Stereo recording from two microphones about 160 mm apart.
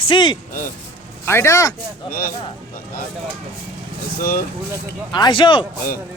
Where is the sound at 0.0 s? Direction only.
30° left (ahead or behind).